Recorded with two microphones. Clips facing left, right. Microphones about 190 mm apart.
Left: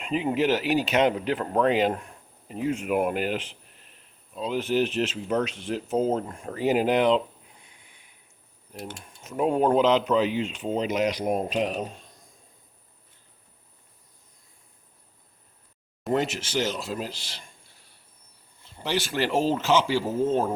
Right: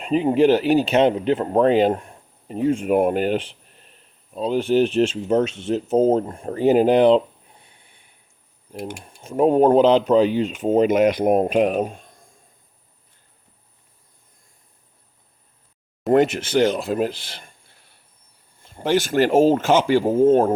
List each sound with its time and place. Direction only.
0.0 s speech: 35° right (ahead or behind)
9.0 s speech: 35° right (ahead or behind); by 12.3 s 50° right (ahead or behind)
16.0 s speech: 55° right (ahead or behind)
18.6 s speech: 50° right (ahead or behind)